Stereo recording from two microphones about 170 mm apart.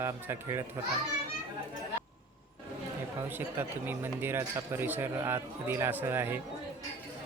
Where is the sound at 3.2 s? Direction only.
10° right (ahead or behind).